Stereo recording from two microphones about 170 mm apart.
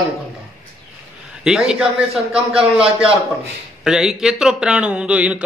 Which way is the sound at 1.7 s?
5° right (ahead or behind).